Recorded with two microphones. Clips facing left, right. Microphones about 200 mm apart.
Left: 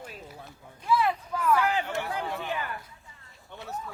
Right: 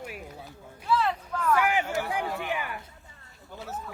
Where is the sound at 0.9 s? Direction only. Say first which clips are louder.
Left 1 dB; 10° left (ahead or behind).